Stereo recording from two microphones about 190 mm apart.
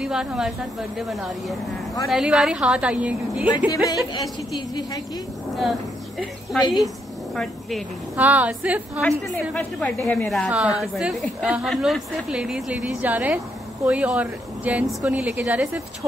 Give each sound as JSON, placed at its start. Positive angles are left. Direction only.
{"t": 0.0, "sound": "a woman's voice", "side_deg": -5}
{"t": 2.0, "sound": "a woman's voice", "side_deg": 0}
{"t": 3.4, "sound": "a woman's voice", "side_deg": 20}
{"t": 5.6, "sound": "a woman's voice", "side_deg": 0}
{"t": 9.6, "sound": "a woman's voice", "side_deg": 10}